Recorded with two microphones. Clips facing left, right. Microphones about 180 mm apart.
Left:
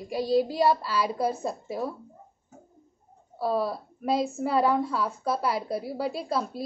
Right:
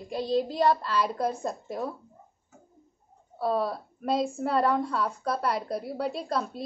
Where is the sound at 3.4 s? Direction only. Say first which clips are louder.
Even; centre (ahead or behind).